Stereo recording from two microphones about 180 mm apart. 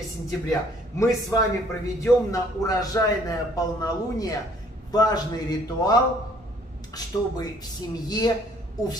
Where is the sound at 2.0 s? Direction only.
20° left (ahead or behind).